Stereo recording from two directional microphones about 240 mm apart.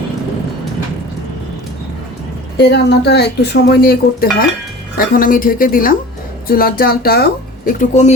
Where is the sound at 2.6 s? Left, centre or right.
Left.